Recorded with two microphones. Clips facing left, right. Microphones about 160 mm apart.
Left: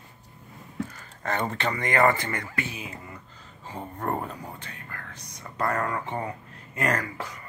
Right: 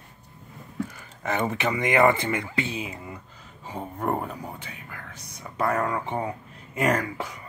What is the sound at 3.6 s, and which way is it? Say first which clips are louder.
Whispering: right 3 dB; 10° right (ahead or behind).